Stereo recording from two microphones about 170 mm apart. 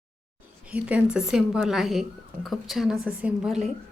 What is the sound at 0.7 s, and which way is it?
Speech, 10° right (ahead or behind).